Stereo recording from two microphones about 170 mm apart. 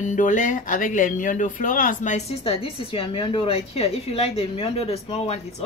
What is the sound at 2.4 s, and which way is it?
A woman's voice, 35° left (ahead or behind).